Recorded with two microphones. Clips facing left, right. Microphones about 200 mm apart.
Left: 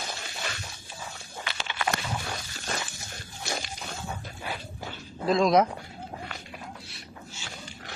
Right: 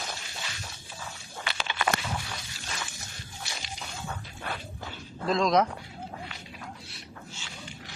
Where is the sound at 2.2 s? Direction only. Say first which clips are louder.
Left 5 dB; 50° left (ahead or behind).